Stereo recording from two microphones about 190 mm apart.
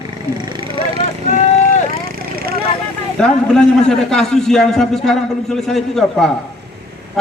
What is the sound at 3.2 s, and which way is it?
A man's voice, 5° left (ahead or behind).